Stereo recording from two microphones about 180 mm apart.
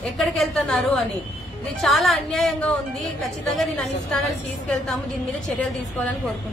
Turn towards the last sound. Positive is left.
turn(degrees=5)  # may be behind; listen again after turning